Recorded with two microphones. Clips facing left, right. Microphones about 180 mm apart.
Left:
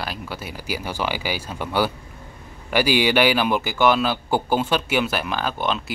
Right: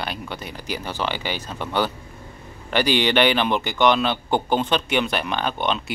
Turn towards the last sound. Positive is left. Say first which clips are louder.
# even
turn(degrees=0)  # may be behind; listen again after turning